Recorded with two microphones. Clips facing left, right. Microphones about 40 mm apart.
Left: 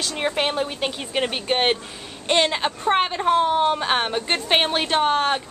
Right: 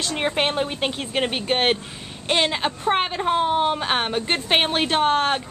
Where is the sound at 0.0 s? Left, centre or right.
Centre.